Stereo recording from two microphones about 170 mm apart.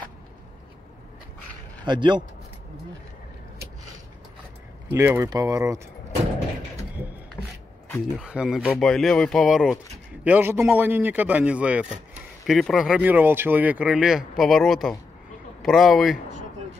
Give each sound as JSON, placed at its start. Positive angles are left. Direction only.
{"t": 1.9, "sound": "speech", "side_deg": -25}
{"t": 4.9, "sound": "speech", "side_deg": -15}
{"t": 8.2, "sound": "speech", "side_deg": -5}